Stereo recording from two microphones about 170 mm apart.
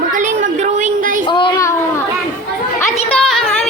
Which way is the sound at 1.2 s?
30° left (ahead or behind).